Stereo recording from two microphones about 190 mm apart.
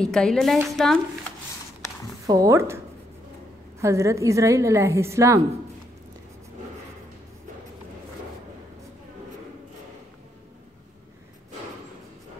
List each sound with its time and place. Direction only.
0.0 s a woman's voice: 5° left (ahead or behind)
2.2 s a woman's voice: 20° right (ahead or behind)
3.8 s a woman's voice: 15° right (ahead or behind)